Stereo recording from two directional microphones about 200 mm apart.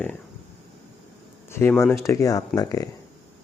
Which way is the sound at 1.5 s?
10° left (ahead or behind).